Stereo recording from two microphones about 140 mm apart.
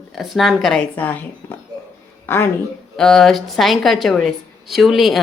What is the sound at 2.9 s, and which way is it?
Speech, centre (ahead or behind).